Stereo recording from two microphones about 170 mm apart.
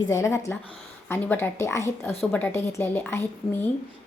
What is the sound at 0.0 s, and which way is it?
A woman's voice, 15° left (ahead or behind).